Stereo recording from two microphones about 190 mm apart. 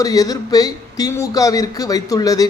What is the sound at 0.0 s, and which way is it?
Speech, 20° left (ahead or behind).